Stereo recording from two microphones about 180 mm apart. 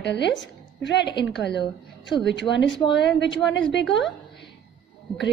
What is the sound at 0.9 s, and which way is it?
Speech, 70° left (ahead or behind).